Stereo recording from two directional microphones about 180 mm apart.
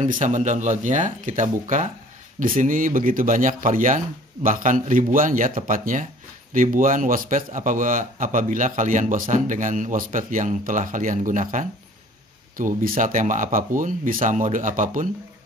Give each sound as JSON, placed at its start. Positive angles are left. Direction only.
{"t": 0.0, "sound": "a man's voice", "side_deg": -45}